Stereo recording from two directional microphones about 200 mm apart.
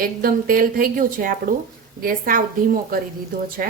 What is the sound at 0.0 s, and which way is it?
Speech, 45° right (ahead or behind).